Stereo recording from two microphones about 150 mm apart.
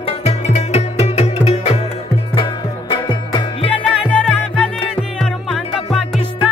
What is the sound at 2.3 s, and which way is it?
Music, 35° left (ahead or behind).